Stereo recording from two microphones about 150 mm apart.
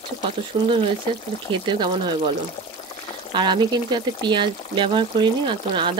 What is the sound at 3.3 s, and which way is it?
Speech, 30° right (ahead or behind).